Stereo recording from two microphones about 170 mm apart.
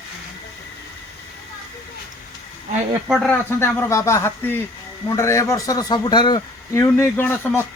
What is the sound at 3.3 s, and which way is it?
A man's voice, 15° left (ahead or behind).